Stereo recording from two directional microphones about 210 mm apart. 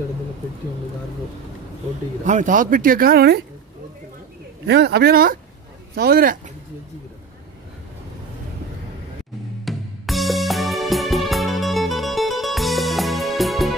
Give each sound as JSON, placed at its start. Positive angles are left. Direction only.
{"t": 2.2, "sound": "speech", "side_deg": -35}
{"t": 4.6, "sound": "speech", "side_deg": -50}
{"t": 9.7, "sound": "music", "side_deg": 0}